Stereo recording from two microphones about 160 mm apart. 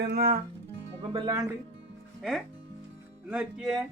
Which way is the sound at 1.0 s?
30° right (ahead or behind).